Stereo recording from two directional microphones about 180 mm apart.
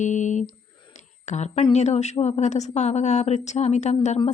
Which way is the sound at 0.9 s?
40° left (ahead or behind).